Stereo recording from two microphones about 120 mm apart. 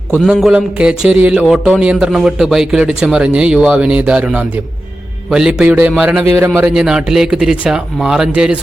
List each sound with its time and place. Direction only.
0.3 s speech: 5° right (ahead or behind)
6.7 s speech: 5° right (ahead or behind)